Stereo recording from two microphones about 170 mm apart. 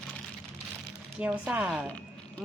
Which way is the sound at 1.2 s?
10° right (ahead or behind).